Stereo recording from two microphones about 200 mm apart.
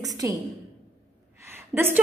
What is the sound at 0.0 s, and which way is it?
Speech, 20° right (ahead or behind).